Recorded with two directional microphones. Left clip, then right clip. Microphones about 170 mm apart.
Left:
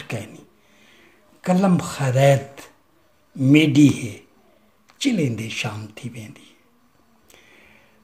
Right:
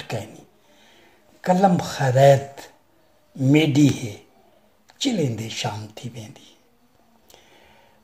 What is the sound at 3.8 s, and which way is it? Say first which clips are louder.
Speech: left 3 dB; 25° right (ahead or behind).